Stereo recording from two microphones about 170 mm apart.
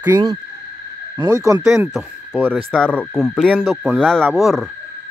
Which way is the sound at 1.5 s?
20° right (ahead or behind).